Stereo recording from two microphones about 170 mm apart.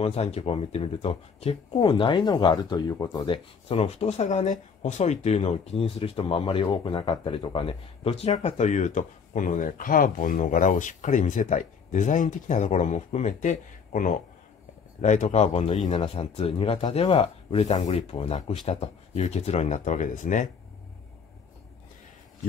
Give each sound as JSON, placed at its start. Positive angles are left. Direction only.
{"t": 0.0, "sound": "speech", "side_deg": 35}
{"t": 3.6, "sound": "speech", "side_deg": 35}